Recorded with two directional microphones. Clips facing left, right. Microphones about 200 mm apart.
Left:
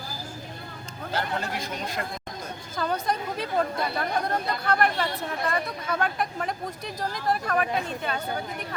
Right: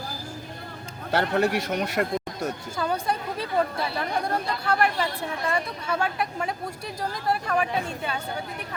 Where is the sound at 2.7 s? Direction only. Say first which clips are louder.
Left 1 dB; 10° right (ahead or behind).